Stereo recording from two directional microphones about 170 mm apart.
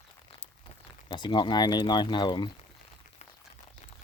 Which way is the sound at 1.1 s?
25° left (ahead or behind).